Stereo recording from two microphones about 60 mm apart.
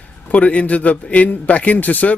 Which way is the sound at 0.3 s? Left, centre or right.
Left.